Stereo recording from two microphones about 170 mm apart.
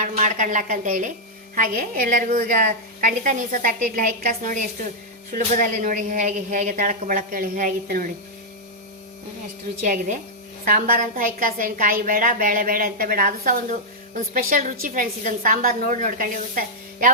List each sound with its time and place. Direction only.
0.0 s a woman's voice: 45° right (ahead or behind)
9.8 s a woman's voice: 45° right (ahead or behind)